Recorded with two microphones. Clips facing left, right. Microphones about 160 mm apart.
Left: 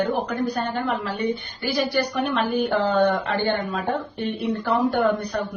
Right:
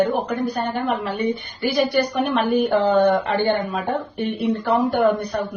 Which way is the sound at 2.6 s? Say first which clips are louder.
Right 3 dB; 15° right (ahead or behind).